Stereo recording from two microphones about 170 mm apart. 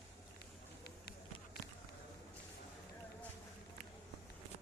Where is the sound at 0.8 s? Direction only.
70° left (ahead or behind).